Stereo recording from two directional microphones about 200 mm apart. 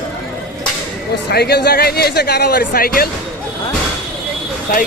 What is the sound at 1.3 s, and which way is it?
Speech, 55° left (ahead or behind).